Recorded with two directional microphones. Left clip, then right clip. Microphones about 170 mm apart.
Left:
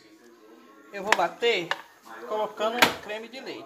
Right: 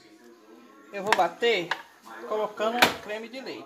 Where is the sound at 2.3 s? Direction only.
40° right (ahead or behind).